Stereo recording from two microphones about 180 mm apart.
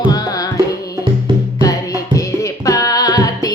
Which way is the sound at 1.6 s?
20° left (ahead or behind).